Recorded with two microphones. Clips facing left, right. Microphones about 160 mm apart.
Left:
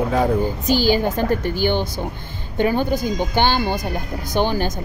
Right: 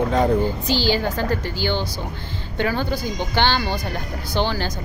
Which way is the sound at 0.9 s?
15° left (ahead or behind).